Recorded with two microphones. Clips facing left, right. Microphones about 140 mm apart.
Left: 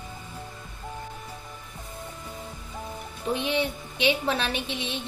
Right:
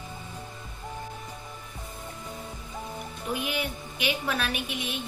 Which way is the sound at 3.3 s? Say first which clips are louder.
Left 5 dB; 25° left (ahead or behind).